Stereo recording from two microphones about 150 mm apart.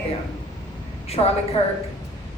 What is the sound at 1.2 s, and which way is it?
Speech, 35° left (ahead or behind).